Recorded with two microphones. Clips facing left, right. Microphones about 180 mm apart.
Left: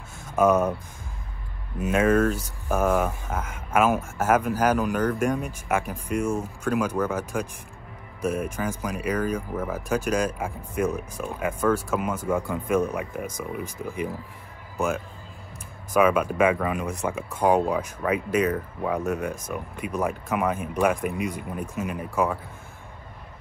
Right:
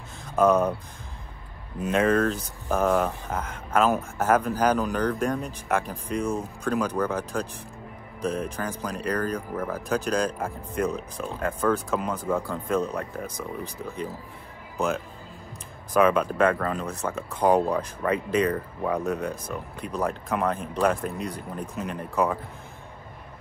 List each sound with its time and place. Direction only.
0.4 s speech: 5° left (ahead or behind)
1.8 s speech: 5° left (ahead or behind)
6.2 s speech: 35° right (ahead or behind)
6.6 s speech: 5° left (ahead or behind)
16.0 s speech: 5° left (ahead or behind)